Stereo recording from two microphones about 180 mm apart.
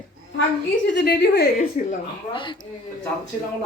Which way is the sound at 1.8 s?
45° left (ahead or behind).